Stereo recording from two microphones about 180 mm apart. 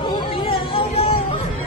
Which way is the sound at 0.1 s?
30° left (ahead or behind).